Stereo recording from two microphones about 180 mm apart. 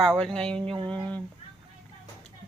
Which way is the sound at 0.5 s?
30° right (ahead or behind).